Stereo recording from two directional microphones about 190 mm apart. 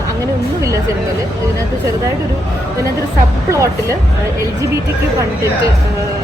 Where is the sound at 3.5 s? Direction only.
15° right (ahead or behind).